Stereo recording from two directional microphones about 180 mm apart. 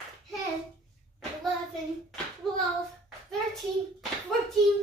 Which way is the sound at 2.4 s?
Centre (ahead or behind).